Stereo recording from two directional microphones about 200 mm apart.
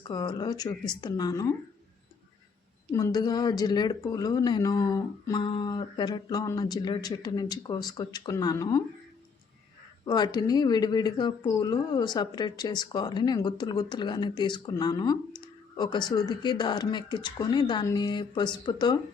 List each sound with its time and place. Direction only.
0.1 s a woman's voice: 20° left (ahead or behind)
2.9 s a woman's voice: 20° left (ahead or behind)
10.1 s a woman's voice: 20° left (ahead or behind)